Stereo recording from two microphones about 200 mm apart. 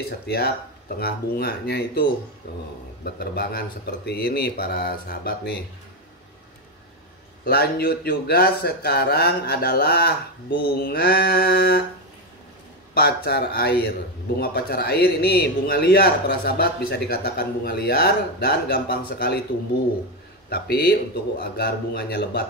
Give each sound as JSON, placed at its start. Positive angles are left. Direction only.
{"t": 0.3, "sound": "a man's voice", "side_deg": 50}
{"t": 3.2, "sound": "a man's voice", "side_deg": 50}
{"t": 7.4, "sound": "a man's voice", "side_deg": 50}
{"t": 12.9, "sound": "a man's voice", "side_deg": 50}
{"t": 20.4, "sound": "a man's voice", "side_deg": 50}